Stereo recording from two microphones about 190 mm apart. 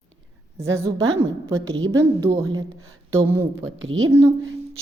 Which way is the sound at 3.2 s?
15° right (ahead or behind).